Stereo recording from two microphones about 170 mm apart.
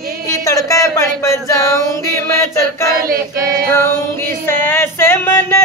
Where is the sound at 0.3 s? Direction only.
20° left (ahead or behind).